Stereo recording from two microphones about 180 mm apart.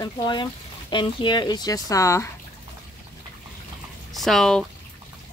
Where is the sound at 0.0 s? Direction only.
25° left (ahead or behind).